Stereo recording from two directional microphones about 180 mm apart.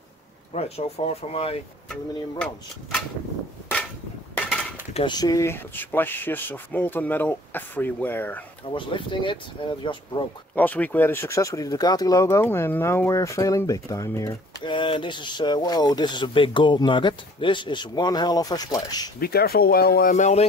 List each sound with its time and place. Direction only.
0.5 s speech: 35° left (ahead or behind)
4.9 s speech: 25° left (ahead or behind)
8.7 s speech: 25° left (ahead or behind)
10.5 s speech: 10° left (ahead or behind)
19.1 s speech: 60° left (ahead or behind); by 20.4 s 40° left (ahead or behind)